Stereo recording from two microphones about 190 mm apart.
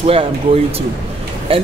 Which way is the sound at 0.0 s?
30° right (ahead or behind).